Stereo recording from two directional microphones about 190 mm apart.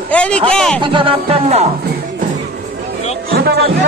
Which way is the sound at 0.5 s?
5° left (ahead or behind).